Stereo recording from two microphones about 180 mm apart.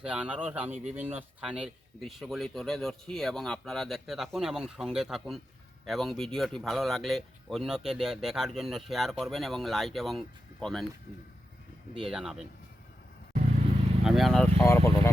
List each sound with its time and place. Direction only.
0.0 s speech: 5° right (ahead or behind)
11.9 s speech: 5° right (ahead or behind)
14.0 s speech: centre (ahead or behind)
14.6 s speech: 15° left (ahead or behind)